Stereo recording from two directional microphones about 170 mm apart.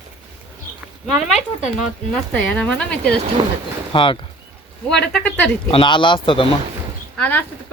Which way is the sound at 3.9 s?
30° left (ahead or behind).